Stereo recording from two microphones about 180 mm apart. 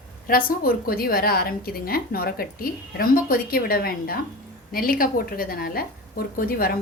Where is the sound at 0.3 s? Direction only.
55° left (ahead or behind).